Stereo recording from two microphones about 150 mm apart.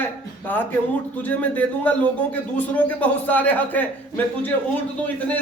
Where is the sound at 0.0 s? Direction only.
10° left (ahead or behind).